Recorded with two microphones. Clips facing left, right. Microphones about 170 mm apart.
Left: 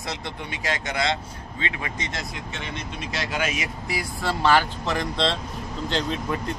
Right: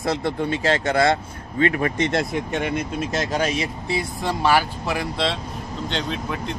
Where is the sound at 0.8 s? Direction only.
55° right (ahead or behind); by 4.0 s 35° right (ahead or behind).